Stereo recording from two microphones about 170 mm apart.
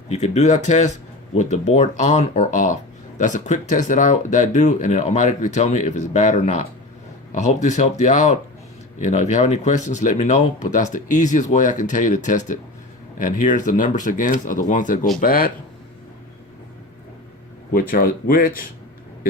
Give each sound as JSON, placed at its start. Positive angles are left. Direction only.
{"t": 0.1, "sound": "speech", "side_deg": 40}
{"t": 17.7, "sound": "speech", "side_deg": 60}